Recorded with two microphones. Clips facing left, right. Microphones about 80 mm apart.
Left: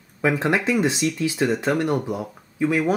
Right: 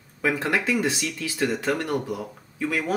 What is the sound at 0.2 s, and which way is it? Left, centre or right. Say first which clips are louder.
Speech: left 3 dB; left.